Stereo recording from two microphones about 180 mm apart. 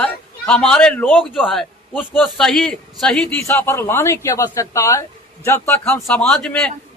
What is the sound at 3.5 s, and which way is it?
A man's voice, 15° left (ahead or behind).